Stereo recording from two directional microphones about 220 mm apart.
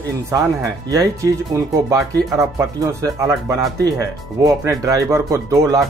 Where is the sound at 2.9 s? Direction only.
15° right (ahead or behind).